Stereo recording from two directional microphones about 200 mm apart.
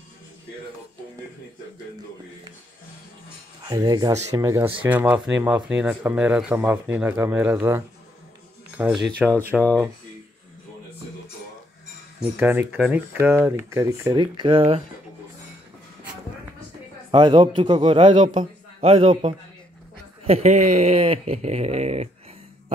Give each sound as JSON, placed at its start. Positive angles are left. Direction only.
{"t": 3.6, "sound": "a man's voice", "side_deg": -20}
{"t": 12.2, "sound": "speech", "side_deg": -10}
{"t": 17.1, "sound": "a man's voice", "side_deg": -25}